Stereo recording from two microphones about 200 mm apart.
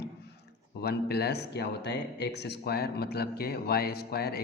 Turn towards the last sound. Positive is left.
turn(degrees=50)  # may be behind; listen again after turning